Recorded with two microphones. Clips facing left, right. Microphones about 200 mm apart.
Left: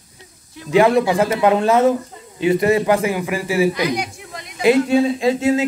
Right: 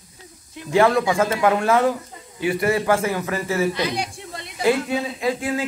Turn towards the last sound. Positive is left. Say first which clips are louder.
# left 7 dB
turn(degrees=25)  # may be behind; listen again after turning